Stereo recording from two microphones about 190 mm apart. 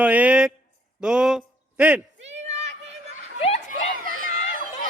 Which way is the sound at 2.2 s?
35° right (ahead or behind).